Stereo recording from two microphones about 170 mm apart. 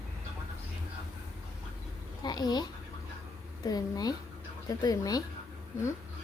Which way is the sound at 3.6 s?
20° left (ahead or behind).